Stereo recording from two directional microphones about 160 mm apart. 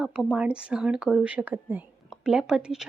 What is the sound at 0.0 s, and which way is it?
Speech, 5° right (ahead or behind).